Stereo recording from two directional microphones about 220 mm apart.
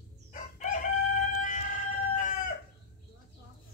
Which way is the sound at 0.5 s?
35° left (ahead or behind).